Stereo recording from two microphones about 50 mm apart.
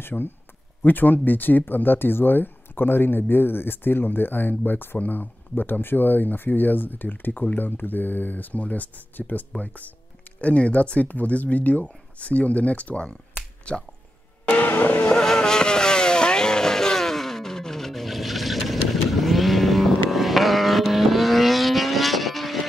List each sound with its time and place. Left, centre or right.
0.1 s speech: left
0.8 s speech: left
5.5 s speech: left
10.4 s speech: left
14.6 s vehicle: left
15.2 s vehicle: centre